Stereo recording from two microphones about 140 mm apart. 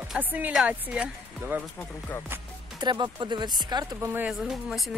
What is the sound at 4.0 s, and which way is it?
Speech, 15° right (ahead or behind).